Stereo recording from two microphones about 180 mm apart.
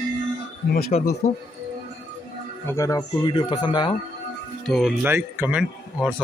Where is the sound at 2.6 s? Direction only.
15° left (ahead or behind).